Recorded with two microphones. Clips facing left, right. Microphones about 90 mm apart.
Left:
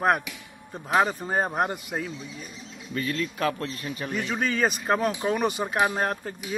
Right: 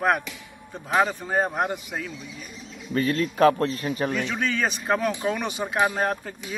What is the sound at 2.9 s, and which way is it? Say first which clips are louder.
Speech: right 5 dB; 40° right (ahead or behind).